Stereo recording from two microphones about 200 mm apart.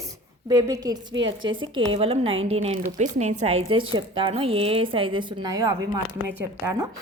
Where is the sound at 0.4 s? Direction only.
20° right (ahead or behind).